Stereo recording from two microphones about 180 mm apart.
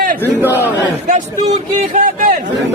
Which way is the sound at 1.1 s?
45° right (ahead or behind).